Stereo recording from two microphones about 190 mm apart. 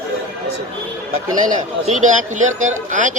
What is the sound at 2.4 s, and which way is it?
Speech, 90° right.